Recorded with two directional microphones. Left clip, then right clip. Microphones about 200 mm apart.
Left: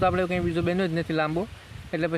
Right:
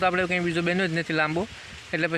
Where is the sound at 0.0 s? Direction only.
5° left (ahead or behind).